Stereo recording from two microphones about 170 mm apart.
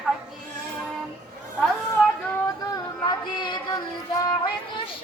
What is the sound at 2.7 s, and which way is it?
Music, 25° left (ahead or behind).